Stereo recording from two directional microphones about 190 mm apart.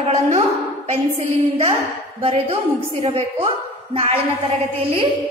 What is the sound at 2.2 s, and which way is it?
A woman's voice, 30° right (ahead or behind).